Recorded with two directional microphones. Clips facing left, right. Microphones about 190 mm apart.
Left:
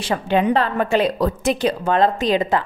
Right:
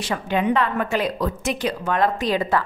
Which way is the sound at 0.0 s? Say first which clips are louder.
Left 4 dB; 30° left (ahead or behind).